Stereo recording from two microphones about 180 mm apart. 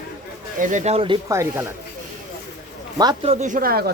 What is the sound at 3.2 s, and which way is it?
Speech, 35° right (ahead or behind).